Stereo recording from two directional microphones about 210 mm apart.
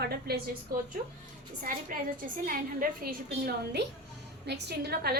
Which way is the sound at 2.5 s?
45° right (ahead or behind).